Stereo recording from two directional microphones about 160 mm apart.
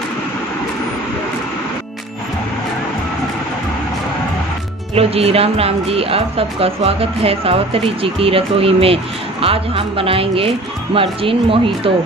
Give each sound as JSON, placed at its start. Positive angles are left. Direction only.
{"t": 4.9, "sound": "speech", "side_deg": -40}